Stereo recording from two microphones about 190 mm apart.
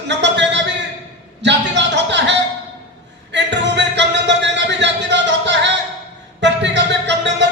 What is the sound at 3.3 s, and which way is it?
Music, 70° right (ahead or behind).